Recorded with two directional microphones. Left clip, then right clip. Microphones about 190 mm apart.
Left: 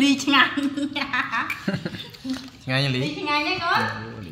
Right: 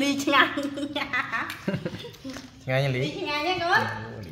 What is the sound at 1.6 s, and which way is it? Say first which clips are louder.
Speech: left 2 dB; 15° right (ahead or behind).